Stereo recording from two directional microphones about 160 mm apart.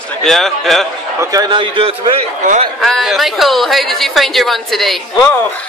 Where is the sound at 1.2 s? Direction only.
25° right (ahead or behind).